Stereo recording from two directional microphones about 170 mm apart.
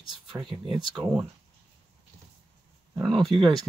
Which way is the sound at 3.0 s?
Centre (ahead or behind).